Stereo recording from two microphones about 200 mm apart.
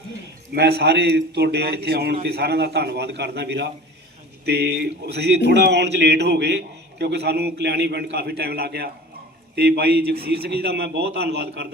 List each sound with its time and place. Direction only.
0.5 s a man's voice: 55° right (ahead or behind)